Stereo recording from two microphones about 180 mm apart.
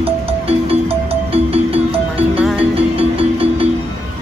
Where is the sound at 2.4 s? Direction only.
5° right (ahead or behind).